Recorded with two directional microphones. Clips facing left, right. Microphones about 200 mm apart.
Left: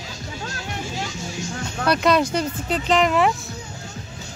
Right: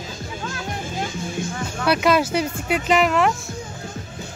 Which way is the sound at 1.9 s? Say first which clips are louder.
Even; 5° right (ahead or behind).